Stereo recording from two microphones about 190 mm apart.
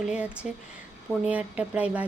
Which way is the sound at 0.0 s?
5° right (ahead or behind).